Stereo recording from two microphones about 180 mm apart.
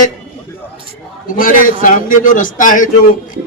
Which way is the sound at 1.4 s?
50° left (ahead or behind).